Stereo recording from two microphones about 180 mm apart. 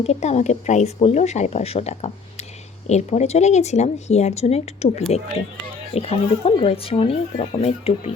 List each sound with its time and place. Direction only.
0.0 s speech: 35° left (ahead or behind)